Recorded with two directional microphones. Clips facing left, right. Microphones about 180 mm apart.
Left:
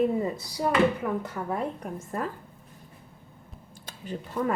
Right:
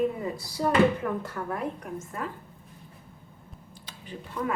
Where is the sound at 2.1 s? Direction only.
40° left (ahead or behind).